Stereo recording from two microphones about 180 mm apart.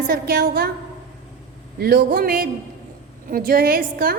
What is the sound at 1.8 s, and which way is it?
A woman's voice, 55° right (ahead or behind).